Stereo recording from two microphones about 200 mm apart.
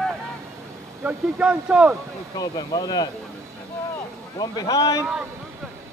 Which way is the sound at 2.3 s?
20° left (ahead or behind).